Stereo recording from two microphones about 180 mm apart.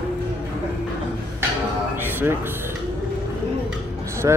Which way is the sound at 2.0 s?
10° right (ahead or behind).